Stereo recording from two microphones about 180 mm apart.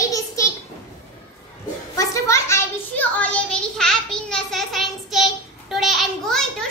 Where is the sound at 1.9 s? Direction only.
15° left (ahead or behind).